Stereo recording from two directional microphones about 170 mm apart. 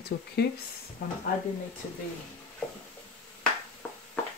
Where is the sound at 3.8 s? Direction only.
10° left (ahead or behind).